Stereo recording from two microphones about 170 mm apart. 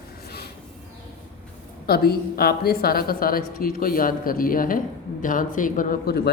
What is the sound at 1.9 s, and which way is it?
A woman's voice, 65° left (ahead or behind).